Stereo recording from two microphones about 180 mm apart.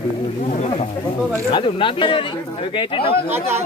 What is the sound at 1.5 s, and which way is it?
Speech, 30° left (ahead or behind).